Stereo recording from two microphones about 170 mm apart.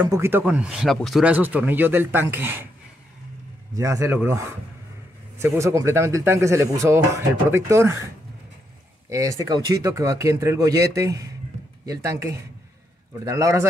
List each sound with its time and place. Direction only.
0.0 s speech: 15° right (ahead or behind)
3.7 s speech: 20° right (ahead or behind)
9.1 s speech: 20° right (ahead or behind)